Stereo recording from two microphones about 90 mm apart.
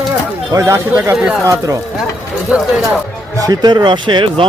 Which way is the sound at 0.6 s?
25° right (ahead or behind).